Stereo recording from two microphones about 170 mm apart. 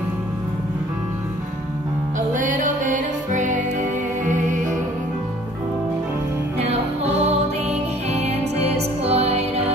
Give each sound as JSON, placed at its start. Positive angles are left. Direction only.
{"t": 2.3, "sound": "music", "side_deg": -50}
{"t": 8.1, "sound": "music", "side_deg": -40}